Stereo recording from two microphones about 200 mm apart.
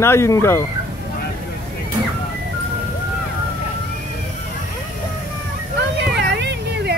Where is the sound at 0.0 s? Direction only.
15° left (ahead or behind).